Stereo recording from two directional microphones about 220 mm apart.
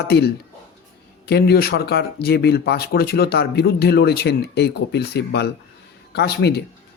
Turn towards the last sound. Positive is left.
turn(degrees=50)  # may be behind; listen again after turning